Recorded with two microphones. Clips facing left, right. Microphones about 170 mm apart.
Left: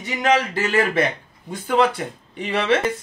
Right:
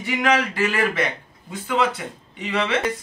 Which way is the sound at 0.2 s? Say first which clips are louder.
Left 2 dB; 25° left (ahead or behind).